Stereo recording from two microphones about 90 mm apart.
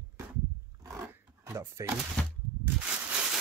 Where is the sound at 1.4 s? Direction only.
35° right (ahead or behind).